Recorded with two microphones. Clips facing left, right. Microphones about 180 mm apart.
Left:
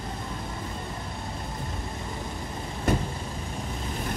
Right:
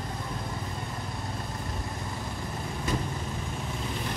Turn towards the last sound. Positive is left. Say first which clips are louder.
# left 5 dB
turn(degrees=60)  # may be behind; listen again after turning